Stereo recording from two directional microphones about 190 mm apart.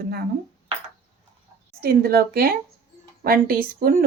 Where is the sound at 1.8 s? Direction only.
55° right (ahead or behind).